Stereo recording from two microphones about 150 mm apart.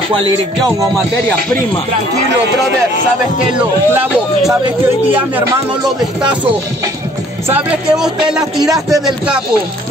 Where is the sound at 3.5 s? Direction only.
10° right (ahead or behind).